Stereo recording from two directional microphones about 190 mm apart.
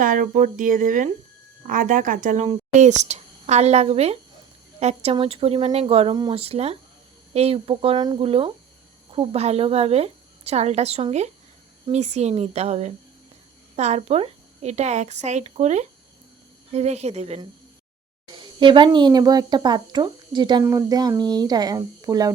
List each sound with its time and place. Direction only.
0.0 s speech: 45° right (ahead or behind); by 22.3 s 20° right (ahead or behind)